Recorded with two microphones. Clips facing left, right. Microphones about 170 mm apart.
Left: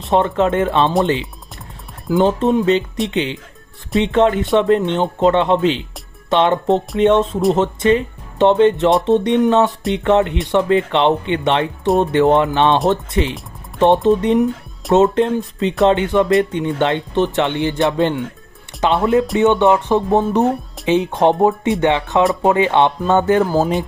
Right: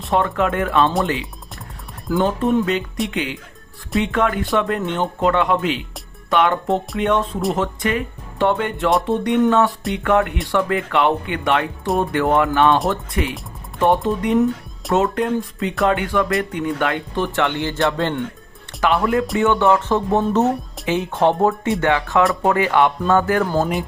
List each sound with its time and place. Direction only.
0.1 s speech: 25° left (ahead or behind)
2.0 s speech: 20° left (ahead or behind)